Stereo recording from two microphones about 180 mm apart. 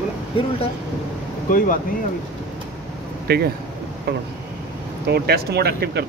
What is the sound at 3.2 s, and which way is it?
Speech, 60° right (ahead or behind).